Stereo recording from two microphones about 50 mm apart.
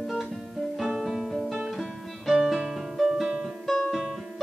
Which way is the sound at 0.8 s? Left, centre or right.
Centre.